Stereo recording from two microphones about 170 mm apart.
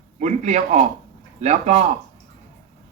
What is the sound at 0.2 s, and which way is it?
A man's voice, 45° right (ahead or behind).